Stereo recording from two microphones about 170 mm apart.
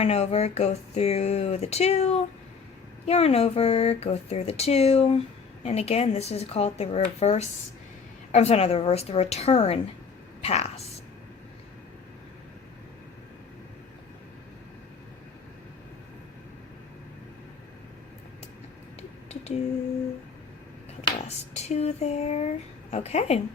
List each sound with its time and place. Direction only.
0.0 s speech: 40° left (ahead or behind)
21.2 s a sound: 40° left (ahead or behind)
22.9 s speech: 40° left (ahead or behind)